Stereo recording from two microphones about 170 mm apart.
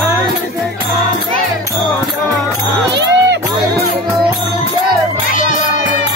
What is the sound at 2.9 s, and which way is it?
Music, 80° right.